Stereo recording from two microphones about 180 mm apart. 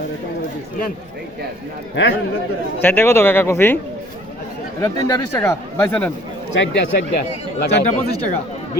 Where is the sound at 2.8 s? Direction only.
10° left (ahead or behind).